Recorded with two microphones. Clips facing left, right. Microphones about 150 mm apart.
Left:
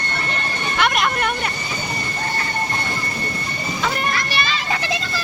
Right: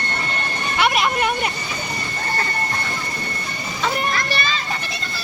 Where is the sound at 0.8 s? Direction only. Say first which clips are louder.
Right 1 dB; centre (ahead or behind).